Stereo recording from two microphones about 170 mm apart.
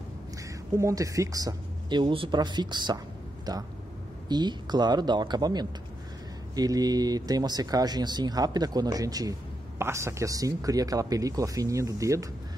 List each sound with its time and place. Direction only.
0.7 s speech: 20° right (ahead or behind)